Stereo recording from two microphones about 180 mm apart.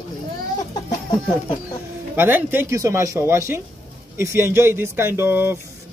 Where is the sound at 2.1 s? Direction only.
10° right (ahead or behind).